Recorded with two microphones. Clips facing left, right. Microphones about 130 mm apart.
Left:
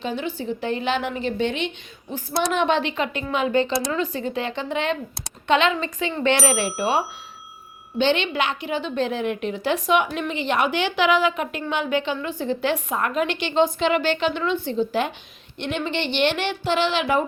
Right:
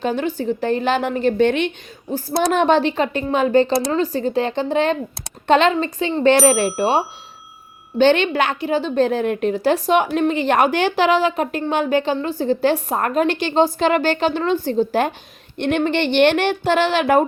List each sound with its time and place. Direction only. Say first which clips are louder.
0.0 s a woman's voice: right 6 dB; 45° right (ahead or behind)
2.5 s a woman's voice: right 6 dB; 40° right (ahead or behind)
7.9 s a woman's voice: right 6 dB; 50° right (ahead or behind)